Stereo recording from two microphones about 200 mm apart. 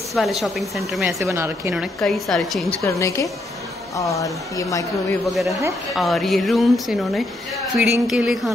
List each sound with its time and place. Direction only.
0.1 s a woman's voice: centre (ahead or behind)
1.2 s a woman's voice: 15° right (ahead or behind)
2.0 s a woman's voice: centre (ahead or behind)
2.8 s speech: 15° left (ahead or behind)
5.2 s a woman's voice: centre (ahead or behind)